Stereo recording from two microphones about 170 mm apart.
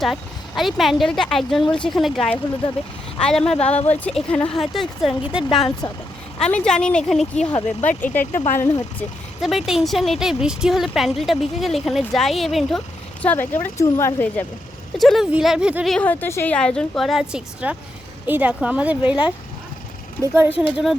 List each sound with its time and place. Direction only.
0.0 s speech: centre (ahead or behind)
2.6 s speech: 30° left (ahead or behind)
3.2 s speech: 5° left (ahead or behind)
3.6 s speech: 40° left (ahead or behind)
4.0 s speech: 5° left (ahead or behind)
5.8 s speech: 30° left (ahead or behind)
6.4 s speech: 5° left (ahead or behind)
9.4 s speech: centre (ahead or behind)
13.2 s speech: 10° left (ahead or behind)
14.9 s speech: centre (ahead or behind)